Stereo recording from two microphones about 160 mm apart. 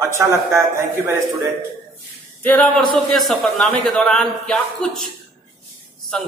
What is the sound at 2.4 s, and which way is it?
A man's voice, 10° left (ahead or behind).